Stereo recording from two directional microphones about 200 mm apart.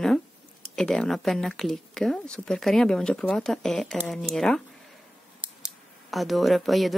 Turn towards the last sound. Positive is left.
turn(degrees=0)  # may be behind; listen again after turning